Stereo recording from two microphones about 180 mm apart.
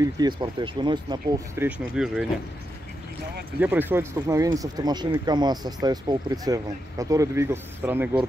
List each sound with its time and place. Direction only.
0.0 s speech: 25° right (ahead or behind)
1.5 s speech: 10° right (ahead or behind)
3.5 s speech: 10° right (ahead or behind)